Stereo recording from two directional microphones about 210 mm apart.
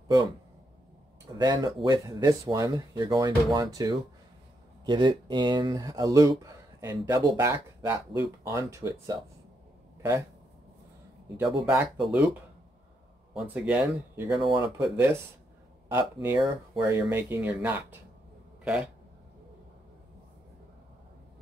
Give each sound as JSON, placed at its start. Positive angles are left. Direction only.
{"t": 1.4, "sound": "speech", "side_deg": -20}
{"t": 11.3, "sound": "speech", "side_deg": -5}
{"t": 13.3, "sound": "speech", "side_deg": 0}
{"t": 14.4, "sound": "speech", "side_deg": -20}
{"t": 15.9, "sound": "speech", "side_deg": -10}